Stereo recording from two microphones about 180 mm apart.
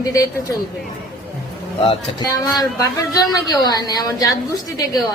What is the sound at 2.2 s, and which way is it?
A woman's voice, 15° left (ahead or behind).